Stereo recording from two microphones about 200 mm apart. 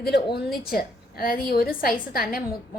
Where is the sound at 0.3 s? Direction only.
50° left (ahead or behind).